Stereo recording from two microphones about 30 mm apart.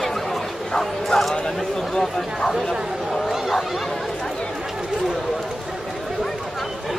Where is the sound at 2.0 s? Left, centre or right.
Centre.